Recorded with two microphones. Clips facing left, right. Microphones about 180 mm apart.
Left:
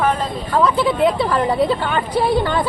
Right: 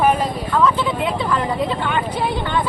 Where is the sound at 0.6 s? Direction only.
35° left (ahead or behind).